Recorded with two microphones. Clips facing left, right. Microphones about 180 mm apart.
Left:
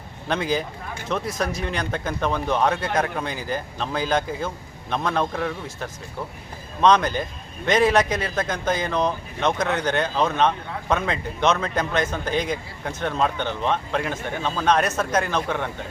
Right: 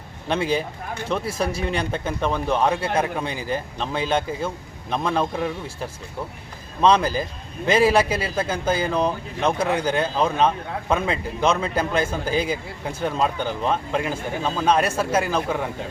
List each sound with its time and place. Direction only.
1.3 s speech: 30° right (ahead or behind)
1.9 s a man's voice: centre (ahead or behind)
6.8 s a man's voice: 5° right (ahead or behind)